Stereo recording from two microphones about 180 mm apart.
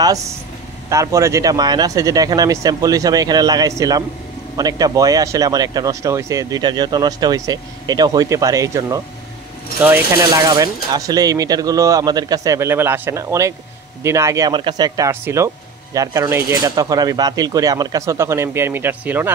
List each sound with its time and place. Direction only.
0.0 s speech: 20° right (ahead or behind)